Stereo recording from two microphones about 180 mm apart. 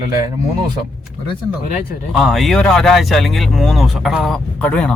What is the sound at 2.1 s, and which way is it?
Speech, centre (ahead or behind).